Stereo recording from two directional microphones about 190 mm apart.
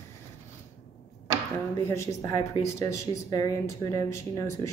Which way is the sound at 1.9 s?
15° left (ahead or behind).